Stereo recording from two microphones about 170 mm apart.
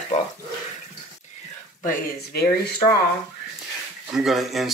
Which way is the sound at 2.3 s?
65° left (ahead or behind).